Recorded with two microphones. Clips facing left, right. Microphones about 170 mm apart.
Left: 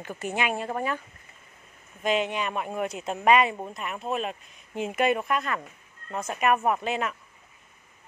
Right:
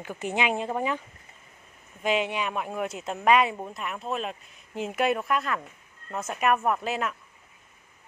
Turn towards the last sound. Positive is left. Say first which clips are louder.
# left 1 dB
turn(degrees=0)  # may be behind; listen again after turning